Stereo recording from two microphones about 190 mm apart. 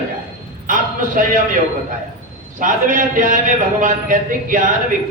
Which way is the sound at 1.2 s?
45° right (ahead or behind).